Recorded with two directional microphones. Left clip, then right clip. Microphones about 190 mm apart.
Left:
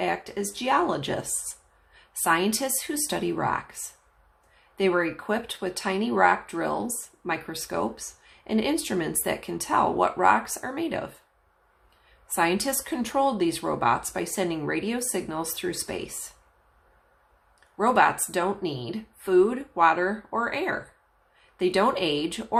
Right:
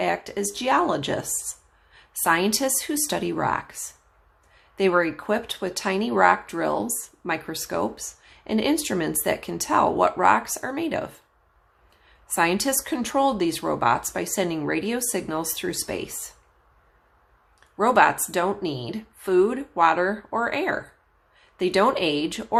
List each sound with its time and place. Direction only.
0.0 s speech: 20° right (ahead or behind)
4.8 s speech: 20° right (ahead or behind)
17.7 s speech: 20° right (ahead or behind)